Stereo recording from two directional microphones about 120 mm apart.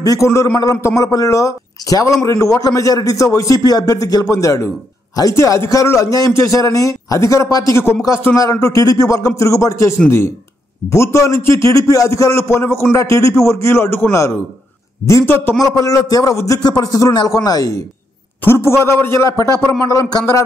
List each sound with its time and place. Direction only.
0.0 s a man's voice: 30° left (ahead or behind)
15.7 s a man's voice: 30° left (ahead or behind)